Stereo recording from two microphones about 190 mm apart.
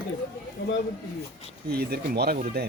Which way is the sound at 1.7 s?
55° right (ahead or behind).